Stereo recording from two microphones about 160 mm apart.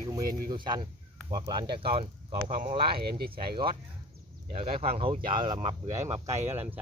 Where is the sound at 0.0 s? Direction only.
25° right (ahead or behind).